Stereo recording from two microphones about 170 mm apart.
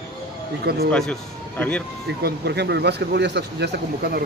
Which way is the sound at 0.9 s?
5° left (ahead or behind).